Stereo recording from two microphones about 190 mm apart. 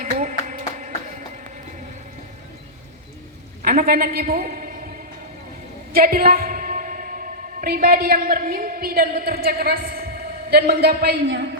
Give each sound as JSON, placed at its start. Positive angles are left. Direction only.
{"t": 0.0, "sound": "a sound", "side_deg": -45}
{"t": 3.6, "sound": "a woman's voice", "side_deg": -50}
{"t": 5.9, "sound": "a woman's voice", "side_deg": -50}